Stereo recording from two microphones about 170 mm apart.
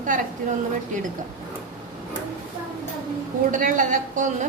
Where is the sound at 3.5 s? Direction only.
50° right (ahead or behind).